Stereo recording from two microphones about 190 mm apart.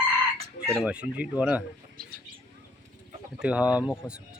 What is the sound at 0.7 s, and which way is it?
Speech, 5° right (ahead or behind).